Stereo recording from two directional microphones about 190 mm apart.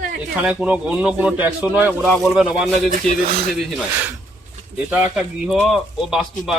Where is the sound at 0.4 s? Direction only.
5° right (ahead or behind).